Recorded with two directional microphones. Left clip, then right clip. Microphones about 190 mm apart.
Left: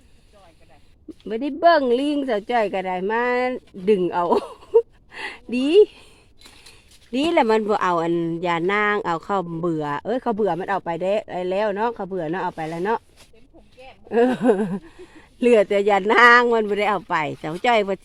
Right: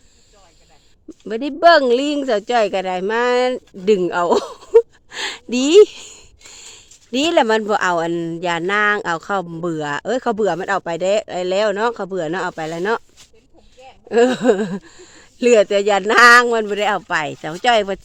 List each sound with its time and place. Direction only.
1.2 s speech: 25° right (ahead or behind)
7.1 s speech: 25° right (ahead or behind)
14.1 s speech: 25° right (ahead or behind)